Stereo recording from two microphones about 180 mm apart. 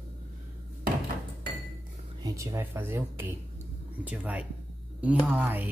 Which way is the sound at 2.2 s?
15° right (ahead or behind).